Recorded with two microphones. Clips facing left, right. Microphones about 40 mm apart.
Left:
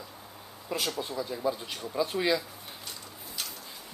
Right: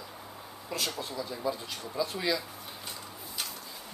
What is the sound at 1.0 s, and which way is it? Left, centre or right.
Speech, centre.